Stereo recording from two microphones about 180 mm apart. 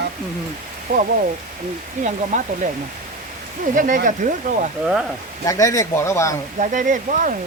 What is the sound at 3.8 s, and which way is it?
Speech, 45° right (ahead or behind).